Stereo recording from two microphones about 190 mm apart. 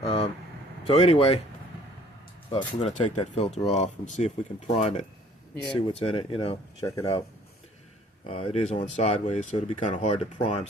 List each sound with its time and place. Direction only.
0.0 s vehicle: 30° left (ahead or behind)
0.9 s speech: 30° left (ahead or behind)
2.5 s speech: 30° left (ahead or behind)
8.2 s speech: 30° left (ahead or behind)